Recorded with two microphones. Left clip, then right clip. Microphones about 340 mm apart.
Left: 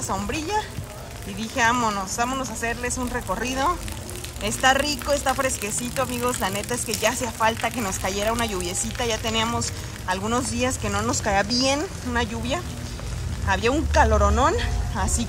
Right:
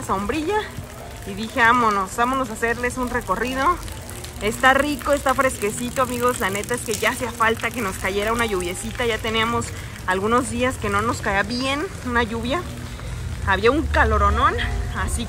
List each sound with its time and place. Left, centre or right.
0.1 s speech: centre